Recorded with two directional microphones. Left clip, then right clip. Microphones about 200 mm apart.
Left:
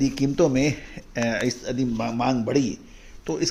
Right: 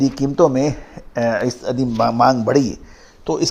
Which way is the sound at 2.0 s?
30° right (ahead or behind).